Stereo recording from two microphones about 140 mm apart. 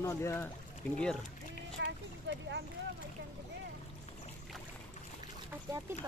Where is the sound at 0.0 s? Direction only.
20° left (ahead or behind).